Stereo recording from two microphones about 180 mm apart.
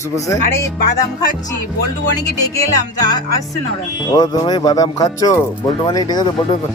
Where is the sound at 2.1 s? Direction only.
20° left (ahead or behind).